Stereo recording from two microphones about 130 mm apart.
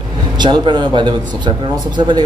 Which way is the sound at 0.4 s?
35° right (ahead or behind).